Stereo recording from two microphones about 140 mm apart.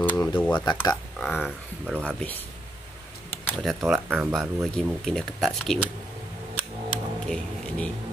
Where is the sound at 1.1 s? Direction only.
5° left (ahead or behind).